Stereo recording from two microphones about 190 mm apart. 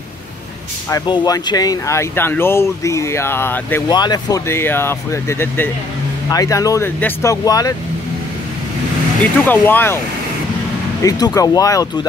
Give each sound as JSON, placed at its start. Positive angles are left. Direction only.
{"t": 0.8, "sound": "speech", "side_deg": 20}
{"t": 9.2, "sound": "speech", "side_deg": 10}
{"t": 11.0, "sound": "speech", "side_deg": 20}